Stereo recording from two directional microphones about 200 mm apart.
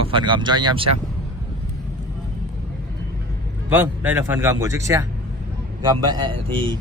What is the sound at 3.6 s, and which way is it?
Speech, 10° right (ahead or behind).